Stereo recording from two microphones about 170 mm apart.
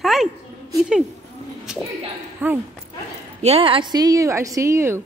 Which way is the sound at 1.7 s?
5° right (ahead or behind).